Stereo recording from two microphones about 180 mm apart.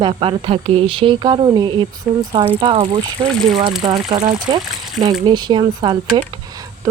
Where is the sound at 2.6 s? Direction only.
30° right (ahead or behind).